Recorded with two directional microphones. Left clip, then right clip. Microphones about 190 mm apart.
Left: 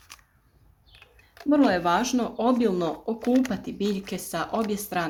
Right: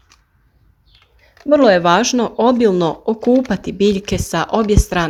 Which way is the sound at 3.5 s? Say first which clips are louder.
Right 13 dB; 40° right (ahead or behind).